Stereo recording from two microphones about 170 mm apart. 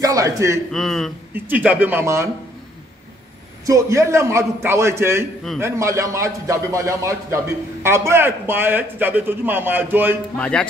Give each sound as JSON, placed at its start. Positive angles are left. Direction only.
{"t": 0.0, "sound": "a man's voice", "side_deg": -20}
{"t": 0.7, "sound": "a man's voice", "side_deg": 0}
{"t": 1.3, "sound": "a man's voice", "side_deg": -10}
{"t": 3.6, "sound": "a man's voice", "side_deg": -20}
{"t": 10.3, "sound": "a man's voice", "side_deg": 5}